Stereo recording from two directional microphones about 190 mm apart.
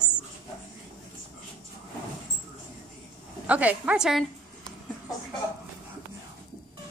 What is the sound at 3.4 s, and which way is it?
Speech, 10° right (ahead or behind).